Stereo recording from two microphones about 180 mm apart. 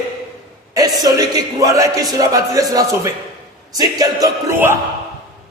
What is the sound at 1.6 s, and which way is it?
Speech, 20° right (ahead or behind).